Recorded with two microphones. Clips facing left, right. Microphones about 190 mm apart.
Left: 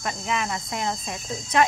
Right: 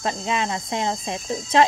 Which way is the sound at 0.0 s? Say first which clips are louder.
Right 3 dB; 25° right (ahead or behind).